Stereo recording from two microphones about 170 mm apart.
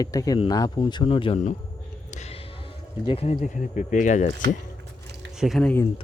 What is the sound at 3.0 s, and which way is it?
Speech, 35° left (ahead or behind).